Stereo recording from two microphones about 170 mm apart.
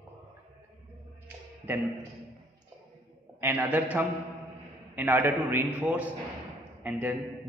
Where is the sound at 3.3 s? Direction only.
10° right (ahead or behind).